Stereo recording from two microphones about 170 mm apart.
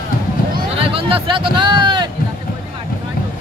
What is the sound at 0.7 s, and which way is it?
Speech, 35° right (ahead or behind).